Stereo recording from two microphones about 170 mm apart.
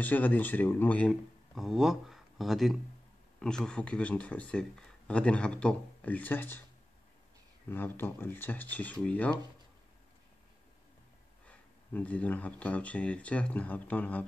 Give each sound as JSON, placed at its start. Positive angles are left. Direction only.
{"t": 0.0, "sound": "speech", "side_deg": 10}
{"t": 7.7, "sound": "speech", "side_deg": 10}
{"t": 11.4, "sound": "speech", "side_deg": 10}